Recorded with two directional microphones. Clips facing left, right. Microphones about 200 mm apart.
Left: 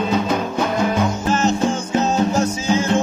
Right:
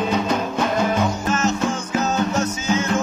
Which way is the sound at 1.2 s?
30° left (ahead or behind).